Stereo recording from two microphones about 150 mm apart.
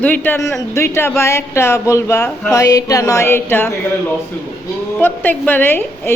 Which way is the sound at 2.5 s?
25° left (ahead or behind).